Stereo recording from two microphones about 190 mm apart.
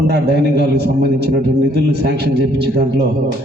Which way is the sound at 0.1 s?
60° right (ahead or behind).